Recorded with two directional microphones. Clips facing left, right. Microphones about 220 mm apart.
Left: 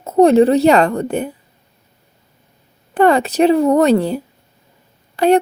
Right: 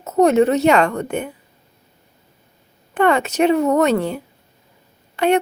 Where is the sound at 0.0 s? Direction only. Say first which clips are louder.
Left 4 dB; 30° left (ahead or behind).